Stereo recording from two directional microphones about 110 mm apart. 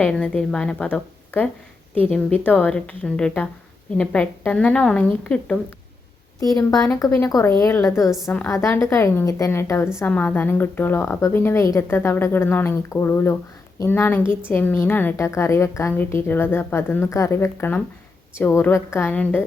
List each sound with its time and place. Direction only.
0.0 s a woman's voice: 10° left (ahead or behind)
6.4 s a woman's voice: 35° left (ahead or behind); by 19.5 s 15° left (ahead or behind)